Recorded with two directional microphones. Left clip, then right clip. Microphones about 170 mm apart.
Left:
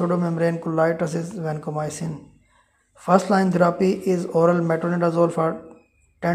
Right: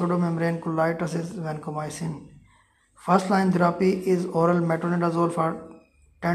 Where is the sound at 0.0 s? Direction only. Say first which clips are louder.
Left 4 dB; 30° left (ahead or behind).